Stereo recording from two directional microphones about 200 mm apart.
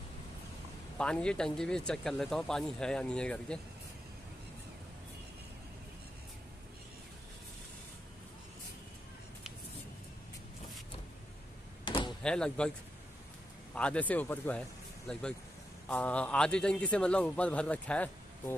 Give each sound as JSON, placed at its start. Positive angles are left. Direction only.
{"t": 0.9, "sound": "speech", "side_deg": 5}
{"t": 11.8, "sound": "door", "side_deg": 25}
{"t": 12.2, "sound": "speech", "side_deg": 5}
{"t": 13.7, "sound": "speech", "side_deg": 5}